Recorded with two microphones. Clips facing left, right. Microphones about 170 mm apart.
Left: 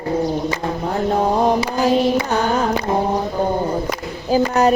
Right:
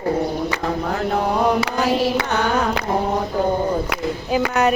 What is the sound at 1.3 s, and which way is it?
Mantra, 35° left (ahead or behind).